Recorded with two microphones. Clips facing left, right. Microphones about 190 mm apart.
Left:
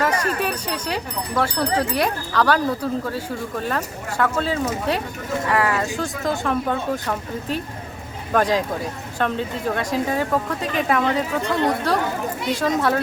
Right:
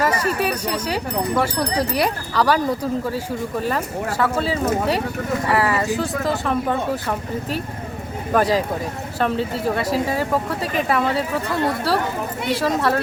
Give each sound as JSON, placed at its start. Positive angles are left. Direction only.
{"t": 0.0, "sound": "speech", "side_deg": -10}
{"t": 1.6, "sound": "speech", "side_deg": -40}
{"t": 2.0, "sound": "speech", "side_deg": -10}